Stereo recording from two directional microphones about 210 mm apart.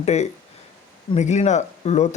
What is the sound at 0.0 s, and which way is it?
Speech, 30° left (ahead or behind).